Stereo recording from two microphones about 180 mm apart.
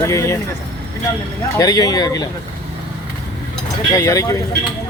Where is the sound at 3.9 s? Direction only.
20° left (ahead or behind).